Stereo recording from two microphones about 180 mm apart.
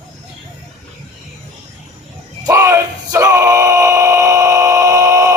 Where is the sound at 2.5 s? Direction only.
15° right (ahead or behind).